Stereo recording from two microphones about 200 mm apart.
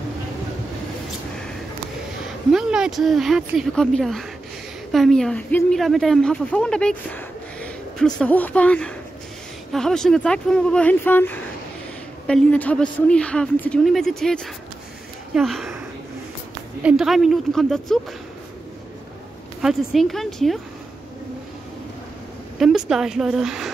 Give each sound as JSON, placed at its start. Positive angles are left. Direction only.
{"t": 2.5, "sound": "speech", "side_deg": -5}
{"t": 16.8, "sound": "speech", "side_deg": 0}
{"t": 19.6, "sound": "speech", "side_deg": 0}
{"t": 22.6, "sound": "speech", "side_deg": 0}